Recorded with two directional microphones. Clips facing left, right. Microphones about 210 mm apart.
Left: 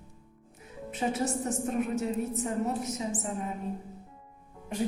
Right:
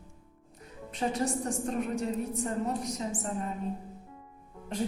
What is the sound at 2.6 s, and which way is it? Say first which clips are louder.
Speech: left 1 dB; 5° left (ahead or behind).